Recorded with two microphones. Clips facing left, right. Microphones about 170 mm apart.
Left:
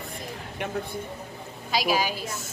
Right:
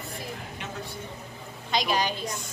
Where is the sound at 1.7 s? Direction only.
5° left (ahead or behind).